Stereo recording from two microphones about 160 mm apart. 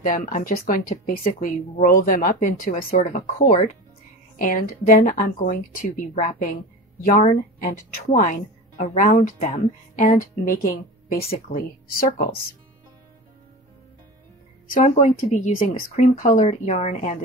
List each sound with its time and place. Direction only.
0.0 s a woman's voice: 55° left (ahead or behind)
3.0 s speech: 45° left (ahead or behind)
4.4 s a woman's voice: 60° left (ahead or behind)
14.9 s speech: 50° left (ahead or behind)